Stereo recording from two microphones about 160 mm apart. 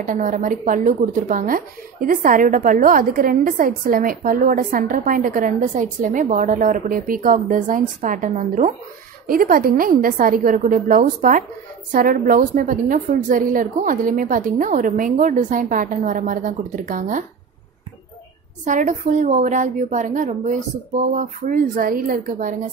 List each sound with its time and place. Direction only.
0.0 s speech: 55° right (ahead or behind)
18.6 s a woman's voice: 50° right (ahead or behind)